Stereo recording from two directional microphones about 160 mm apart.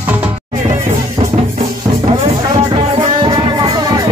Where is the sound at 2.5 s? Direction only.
30° right (ahead or behind).